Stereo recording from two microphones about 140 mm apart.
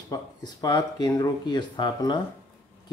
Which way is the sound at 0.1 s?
25° left (ahead or behind).